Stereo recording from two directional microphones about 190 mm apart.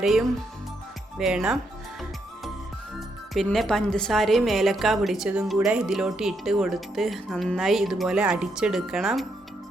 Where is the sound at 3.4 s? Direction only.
Centre (ahead or behind).